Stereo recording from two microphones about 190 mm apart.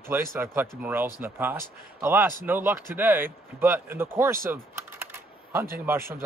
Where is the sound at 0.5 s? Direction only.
10° right (ahead or behind).